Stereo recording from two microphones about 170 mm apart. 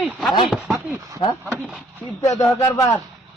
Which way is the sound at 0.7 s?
15° right (ahead or behind).